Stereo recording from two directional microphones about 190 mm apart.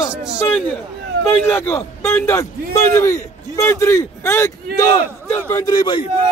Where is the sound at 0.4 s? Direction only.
10° left (ahead or behind).